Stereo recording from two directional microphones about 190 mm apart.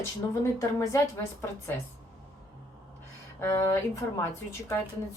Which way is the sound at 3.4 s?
15° left (ahead or behind).